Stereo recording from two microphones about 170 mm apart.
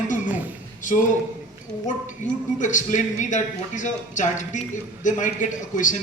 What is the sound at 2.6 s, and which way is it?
A man's voice, 45° left (ahead or behind).